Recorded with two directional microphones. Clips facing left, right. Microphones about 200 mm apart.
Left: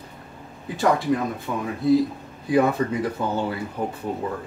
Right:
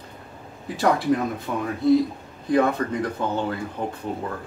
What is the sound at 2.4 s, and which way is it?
Speech, 10° left (ahead or behind).